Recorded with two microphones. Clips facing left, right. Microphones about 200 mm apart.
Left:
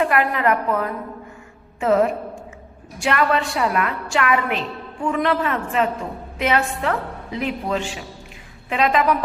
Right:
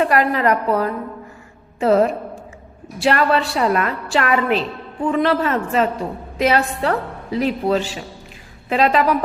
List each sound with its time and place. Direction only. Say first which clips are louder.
0.0 s a woman's voice: right 2 dB; 35° right (ahead or behind)